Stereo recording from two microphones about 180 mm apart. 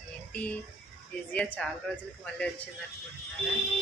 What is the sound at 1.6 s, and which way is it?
Speech, 5° left (ahead or behind).